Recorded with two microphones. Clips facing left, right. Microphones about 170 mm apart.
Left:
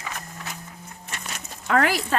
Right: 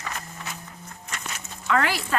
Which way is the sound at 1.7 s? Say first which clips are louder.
Left 2 dB; 50° left (ahead or behind).